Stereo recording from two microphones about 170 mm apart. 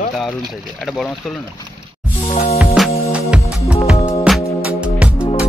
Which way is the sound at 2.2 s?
40° left (ahead or behind).